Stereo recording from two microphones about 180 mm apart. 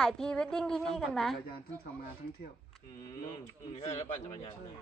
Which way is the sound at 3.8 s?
35° left (ahead or behind).